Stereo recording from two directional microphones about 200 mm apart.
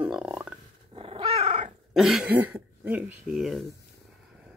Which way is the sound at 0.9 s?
30° right (ahead or behind).